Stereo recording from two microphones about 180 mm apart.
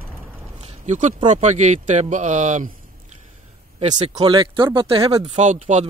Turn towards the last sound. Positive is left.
turn(degrees=-40)  # may be behind; listen again after turning